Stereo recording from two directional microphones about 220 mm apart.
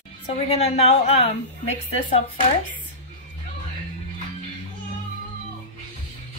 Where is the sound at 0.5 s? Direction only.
30° left (ahead or behind).